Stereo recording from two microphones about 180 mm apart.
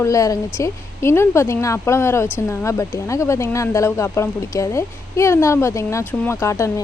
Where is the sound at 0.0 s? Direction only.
20° left (ahead or behind).